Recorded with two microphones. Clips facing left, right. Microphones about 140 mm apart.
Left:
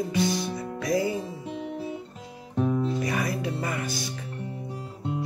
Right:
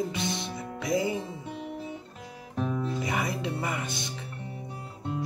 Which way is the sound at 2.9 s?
20° right (ahead or behind).